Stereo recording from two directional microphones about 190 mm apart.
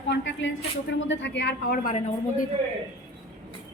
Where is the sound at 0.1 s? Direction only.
65° left (ahead or behind); by 2.0 s 50° left (ahead or behind).